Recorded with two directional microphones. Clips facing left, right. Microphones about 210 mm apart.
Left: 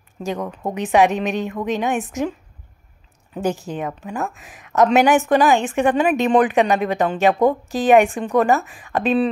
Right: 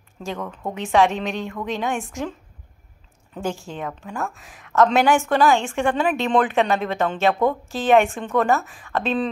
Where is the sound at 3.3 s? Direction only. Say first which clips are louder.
Left 5 dB; 15° left (ahead or behind).